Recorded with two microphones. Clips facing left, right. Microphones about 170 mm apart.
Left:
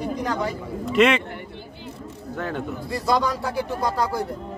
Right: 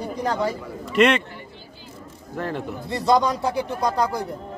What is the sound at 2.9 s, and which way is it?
Speech, 20° right (ahead or behind).